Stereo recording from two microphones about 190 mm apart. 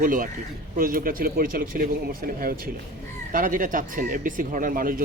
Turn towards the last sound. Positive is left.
turn(degrees=-45)  # may be behind; listen again after turning